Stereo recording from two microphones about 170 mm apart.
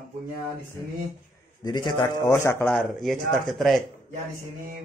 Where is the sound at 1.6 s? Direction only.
25° left (ahead or behind).